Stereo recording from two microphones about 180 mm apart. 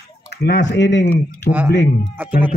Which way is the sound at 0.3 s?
65° left (ahead or behind).